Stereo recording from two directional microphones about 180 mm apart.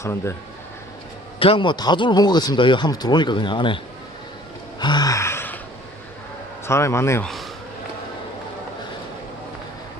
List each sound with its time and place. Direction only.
0.0 s a man's voice: 15° left (ahead or behind)
1.4 s speech: 30° left (ahead or behind)
4.8 s a sound: 25° left (ahead or behind)
6.7 s a man's voice: 15° left (ahead or behind)